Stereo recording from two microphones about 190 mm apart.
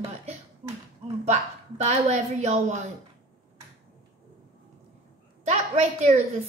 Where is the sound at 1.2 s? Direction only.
35° right (ahead or behind).